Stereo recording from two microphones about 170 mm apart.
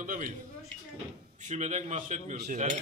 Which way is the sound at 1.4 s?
45° right (ahead or behind).